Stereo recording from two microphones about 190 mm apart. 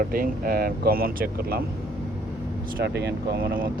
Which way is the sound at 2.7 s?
60° right (ahead or behind).